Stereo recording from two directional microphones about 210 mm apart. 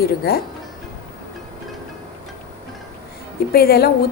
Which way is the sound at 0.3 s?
45° left (ahead or behind).